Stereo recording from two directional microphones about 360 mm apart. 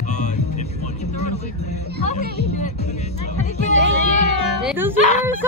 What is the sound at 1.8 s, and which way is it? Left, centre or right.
Speech, right.